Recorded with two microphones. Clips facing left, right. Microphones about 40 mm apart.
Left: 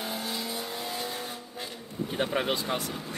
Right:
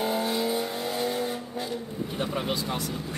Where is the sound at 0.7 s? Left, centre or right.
Right.